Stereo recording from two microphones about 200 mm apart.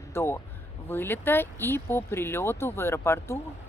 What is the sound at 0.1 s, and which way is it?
Speech, 10° left (ahead or behind).